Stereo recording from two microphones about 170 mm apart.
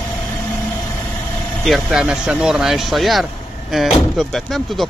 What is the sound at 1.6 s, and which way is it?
Speech, centre (ahead or behind).